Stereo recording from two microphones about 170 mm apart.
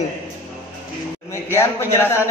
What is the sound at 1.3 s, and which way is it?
Speech, 15° left (ahead or behind).